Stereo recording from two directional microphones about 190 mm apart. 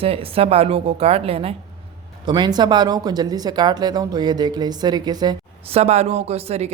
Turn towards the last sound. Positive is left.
turn(degrees=-35)  # may be behind; listen again after turning